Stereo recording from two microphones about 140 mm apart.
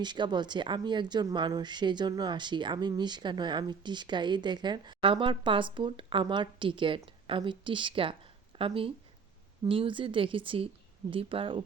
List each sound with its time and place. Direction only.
0.0 s speech: 30° right (ahead or behind)